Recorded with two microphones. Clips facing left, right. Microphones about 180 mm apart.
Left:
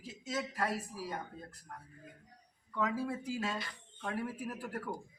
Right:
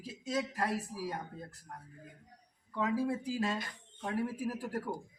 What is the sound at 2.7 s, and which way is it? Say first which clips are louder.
Speech: right 3 dB; 30° right (ahead or behind).